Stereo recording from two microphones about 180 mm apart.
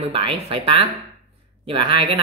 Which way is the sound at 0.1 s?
30° right (ahead or behind).